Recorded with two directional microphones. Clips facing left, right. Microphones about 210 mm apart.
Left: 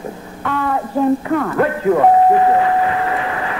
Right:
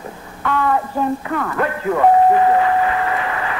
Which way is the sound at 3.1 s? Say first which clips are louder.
Left 1 dB; 30° left (ahead or behind).